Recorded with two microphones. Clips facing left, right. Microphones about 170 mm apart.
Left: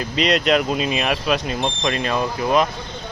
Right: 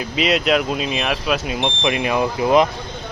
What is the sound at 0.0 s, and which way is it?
Speech, 5° right (ahead or behind).